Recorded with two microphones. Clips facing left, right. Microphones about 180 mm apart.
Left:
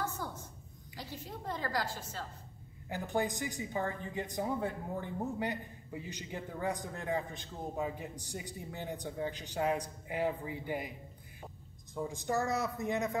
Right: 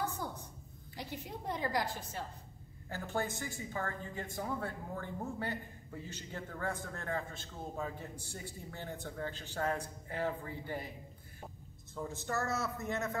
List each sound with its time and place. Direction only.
0.9 s a woman's voice: 15° right (ahead or behind)
2.9 s a woman's voice: 15° left (ahead or behind)
11.9 s a woman's voice: 15° left (ahead or behind)